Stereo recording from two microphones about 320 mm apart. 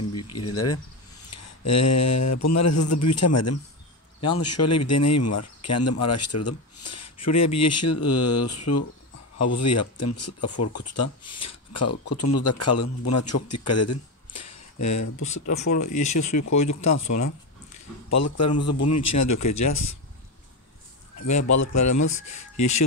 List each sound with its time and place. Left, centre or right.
0.1 s a sound: left
0.5 s a man's voice: left
21.2 s a man's voice: left